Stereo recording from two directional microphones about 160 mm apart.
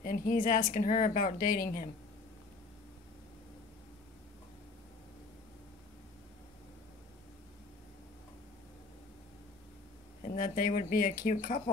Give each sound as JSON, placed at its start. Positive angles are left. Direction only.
{"t": 0.0, "sound": "a woman's voice", "side_deg": 60}
{"t": 10.2, "sound": "a woman's voice", "side_deg": 60}